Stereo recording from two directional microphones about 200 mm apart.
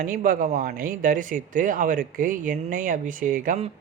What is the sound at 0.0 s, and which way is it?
Speech, 45° right (ahead or behind).